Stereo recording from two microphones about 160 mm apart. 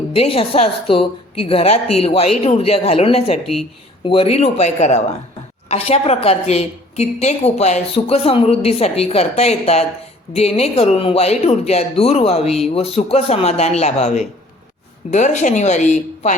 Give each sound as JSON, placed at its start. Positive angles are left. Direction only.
{"t": 0.1, "sound": "a woman's voice", "side_deg": 35}